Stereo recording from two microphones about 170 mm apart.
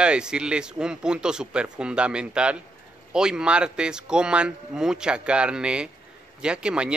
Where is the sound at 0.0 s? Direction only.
5° right (ahead or behind).